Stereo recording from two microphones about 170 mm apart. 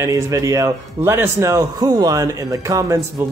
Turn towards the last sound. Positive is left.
turn(degrees=-20)  # may be behind; listen again after turning